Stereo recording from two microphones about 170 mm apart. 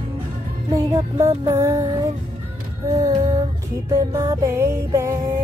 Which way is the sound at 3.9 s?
15° right (ahead or behind).